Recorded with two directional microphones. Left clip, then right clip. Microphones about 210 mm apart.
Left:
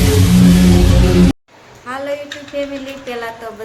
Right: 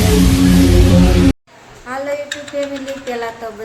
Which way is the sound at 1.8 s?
5° right (ahead or behind).